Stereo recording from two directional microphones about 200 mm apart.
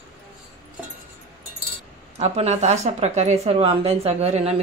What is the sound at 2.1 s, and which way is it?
A woman's voice, 30° right (ahead or behind).